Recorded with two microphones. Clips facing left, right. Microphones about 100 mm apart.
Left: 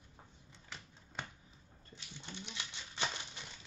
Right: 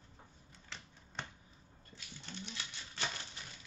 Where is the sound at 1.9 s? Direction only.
15° left (ahead or behind).